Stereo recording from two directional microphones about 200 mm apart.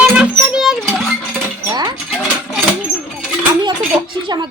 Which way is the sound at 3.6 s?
25° right (ahead or behind).